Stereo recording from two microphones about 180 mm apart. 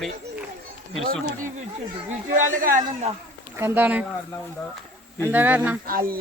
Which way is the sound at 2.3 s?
45° right (ahead or behind).